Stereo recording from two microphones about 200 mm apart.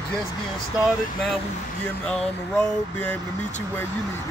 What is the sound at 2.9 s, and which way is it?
Speech, 10° left (ahead or behind).